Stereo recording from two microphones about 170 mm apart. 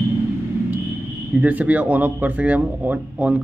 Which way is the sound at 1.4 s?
10° right (ahead or behind).